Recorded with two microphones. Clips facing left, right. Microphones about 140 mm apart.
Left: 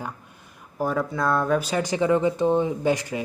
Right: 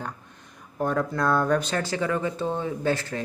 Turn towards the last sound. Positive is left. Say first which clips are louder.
# left 2 dB
turn(degrees=15)  # may be behind; listen again after turning